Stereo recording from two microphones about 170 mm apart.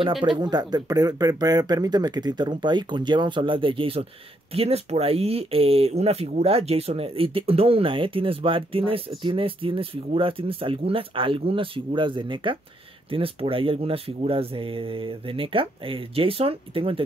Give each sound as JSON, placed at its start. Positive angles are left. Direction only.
{"t": 0.0, "sound": "speech", "side_deg": -30}